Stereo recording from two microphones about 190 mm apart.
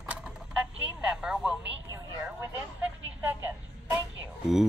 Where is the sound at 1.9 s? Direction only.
15° right (ahead or behind).